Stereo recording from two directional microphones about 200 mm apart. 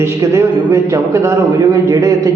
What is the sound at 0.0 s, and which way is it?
A man's voice, 15° right (ahead or behind).